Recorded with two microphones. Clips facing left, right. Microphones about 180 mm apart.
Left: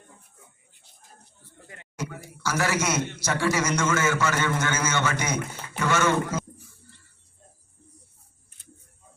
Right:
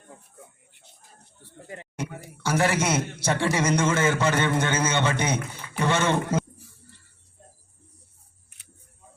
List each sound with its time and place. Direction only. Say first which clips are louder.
1.6 s a man's voice: right 2 dB; 30° right (ahead or behind)